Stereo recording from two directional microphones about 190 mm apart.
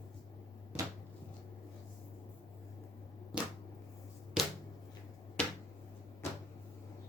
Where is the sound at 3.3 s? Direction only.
5° right (ahead or behind).